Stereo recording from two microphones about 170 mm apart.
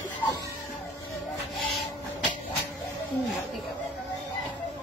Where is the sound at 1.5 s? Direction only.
Centre (ahead or behind).